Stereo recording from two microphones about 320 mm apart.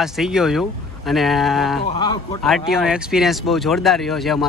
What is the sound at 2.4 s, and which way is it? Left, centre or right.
A man's voice, centre.